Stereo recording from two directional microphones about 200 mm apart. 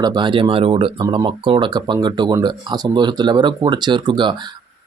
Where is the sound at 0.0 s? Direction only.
20° right (ahead or behind).